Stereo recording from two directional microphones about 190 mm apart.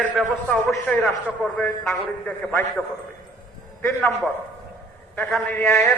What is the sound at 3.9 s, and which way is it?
A man's voice, 10° left (ahead or behind).